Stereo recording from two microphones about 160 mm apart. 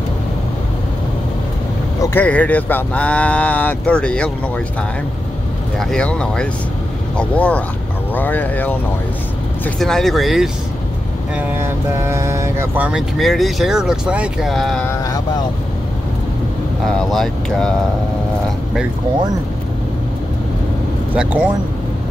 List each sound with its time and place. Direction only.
2.0 s speech: 10° left (ahead or behind)
5.8 s speech: 5° left (ahead or behind)
9.8 s speech: centre (ahead or behind)
11.3 s speech: 15° right (ahead or behind)
13.2 s speech: centre (ahead or behind)
16.8 s speech: centre (ahead or behind)
21.1 s speech: 10° right (ahead or behind)